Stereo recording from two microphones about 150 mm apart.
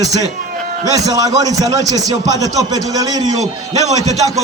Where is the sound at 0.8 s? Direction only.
25° right (ahead or behind).